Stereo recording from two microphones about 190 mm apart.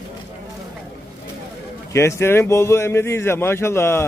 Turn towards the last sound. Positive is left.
turn(degrees=15)  # may be behind; listen again after turning